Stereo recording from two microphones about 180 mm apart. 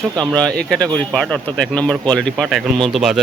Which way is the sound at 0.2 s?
5° left (ahead or behind).